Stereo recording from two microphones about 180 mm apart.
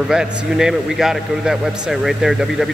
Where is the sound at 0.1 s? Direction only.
5° right (ahead or behind).